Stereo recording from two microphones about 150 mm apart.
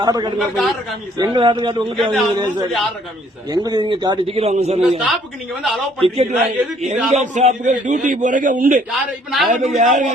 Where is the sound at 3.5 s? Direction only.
25° right (ahead or behind).